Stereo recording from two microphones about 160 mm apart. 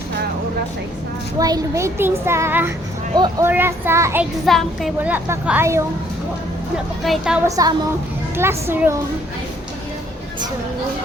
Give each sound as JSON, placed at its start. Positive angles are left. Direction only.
{"t": 1.4, "sound": "a child's voice", "side_deg": -20}
{"t": 4.4, "sound": "speech", "side_deg": 0}
{"t": 5.1, "sound": "a child's voice", "side_deg": -10}
{"t": 7.0, "sound": "speech", "side_deg": 0}
{"t": 7.4, "sound": "a woman's voice", "side_deg": -20}